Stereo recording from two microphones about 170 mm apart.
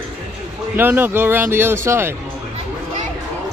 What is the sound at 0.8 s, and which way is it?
Speech, 10° right (ahead or behind).